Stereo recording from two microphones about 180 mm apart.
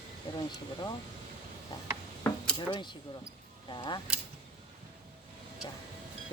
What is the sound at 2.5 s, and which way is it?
Speech, 25° left (ahead or behind).